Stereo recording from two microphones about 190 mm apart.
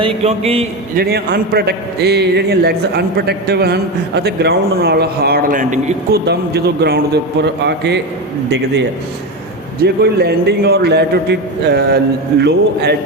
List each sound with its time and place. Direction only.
0.2 s a sound: 30° right (ahead or behind)
0.9 s a man's voice: 55° right (ahead or behind)
6.2 s a man's voice: 60° right (ahead or behind)
9.8 s a man's voice: 60° right (ahead or behind)